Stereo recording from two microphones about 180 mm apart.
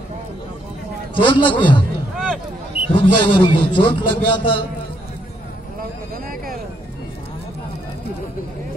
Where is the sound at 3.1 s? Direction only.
30° left (ahead or behind).